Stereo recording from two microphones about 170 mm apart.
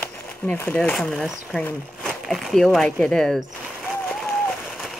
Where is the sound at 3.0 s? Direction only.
5° left (ahead or behind).